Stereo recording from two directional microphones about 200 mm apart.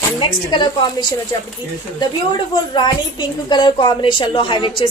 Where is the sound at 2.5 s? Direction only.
20° left (ahead or behind).